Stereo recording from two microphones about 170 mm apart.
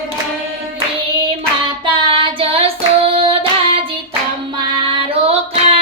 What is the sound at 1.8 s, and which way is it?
Child singing, 30° right (ahead or behind).